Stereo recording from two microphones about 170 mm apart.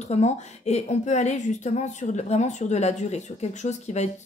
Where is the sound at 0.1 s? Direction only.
40° left (ahead or behind).